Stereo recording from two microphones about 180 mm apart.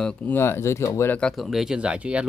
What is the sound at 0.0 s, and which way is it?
Speech, 5° left (ahead or behind).